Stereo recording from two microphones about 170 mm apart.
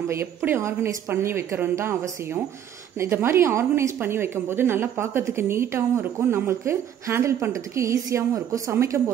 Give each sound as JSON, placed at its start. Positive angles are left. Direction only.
{"t": 0.1, "sound": "a woman's voice", "side_deg": -15}
{"t": 3.0, "sound": "a woman's voice", "side_deg": -15}